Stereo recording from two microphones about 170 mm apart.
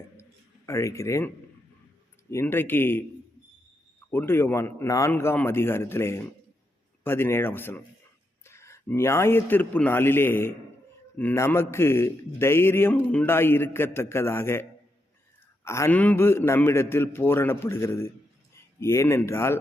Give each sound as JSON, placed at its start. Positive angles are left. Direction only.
{"t": 0.2, "sound": "a sound", "side_deg": 15}
{"t": 2.3, "sound": "a man's voice", "side_deg": 15}
{"t": 4.1, "sound": "a man's voice", "side_deg": 15}